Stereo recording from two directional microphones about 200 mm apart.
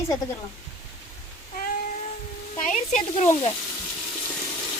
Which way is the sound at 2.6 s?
35° left (ahead or behind).